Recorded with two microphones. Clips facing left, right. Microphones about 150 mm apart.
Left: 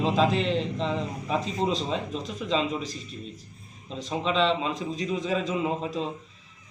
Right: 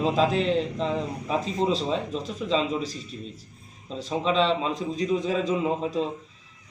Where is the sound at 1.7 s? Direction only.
40° right (ahead or behind).